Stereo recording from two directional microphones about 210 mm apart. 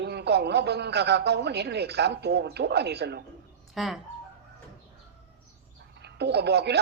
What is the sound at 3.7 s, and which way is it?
Speech, centre (ahead or behind).